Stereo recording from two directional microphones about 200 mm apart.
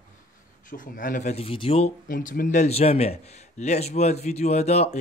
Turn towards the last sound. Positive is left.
turn(degrees=35)  # may be behind; listen again after turning